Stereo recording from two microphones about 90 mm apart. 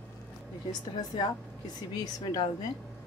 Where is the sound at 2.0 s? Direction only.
45° left (ahead or behind).